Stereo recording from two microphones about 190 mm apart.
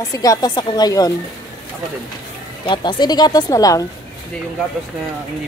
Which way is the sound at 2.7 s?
25° left (ahead or behind).